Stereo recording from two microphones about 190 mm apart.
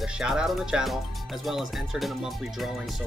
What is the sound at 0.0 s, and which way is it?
Speech, 5° right (ahead or behind).